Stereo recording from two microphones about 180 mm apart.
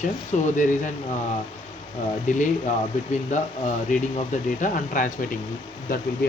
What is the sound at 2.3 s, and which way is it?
Speech, 45° left (ahead or behind).